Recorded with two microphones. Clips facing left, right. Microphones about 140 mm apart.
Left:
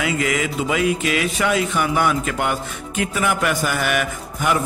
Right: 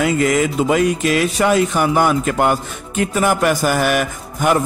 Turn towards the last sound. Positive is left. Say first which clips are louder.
# right 4 dB
turn(degrees=-40)  # may be behind; listen again after turning